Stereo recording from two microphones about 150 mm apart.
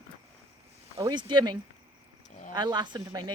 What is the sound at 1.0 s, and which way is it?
Speech, 30° right (ahead or behind).